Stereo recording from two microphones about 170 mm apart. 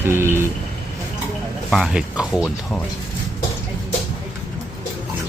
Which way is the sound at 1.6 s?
Centre (ahead or behind).